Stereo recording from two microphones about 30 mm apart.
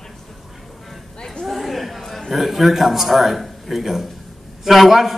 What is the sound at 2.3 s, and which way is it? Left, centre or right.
A man's voice, centre.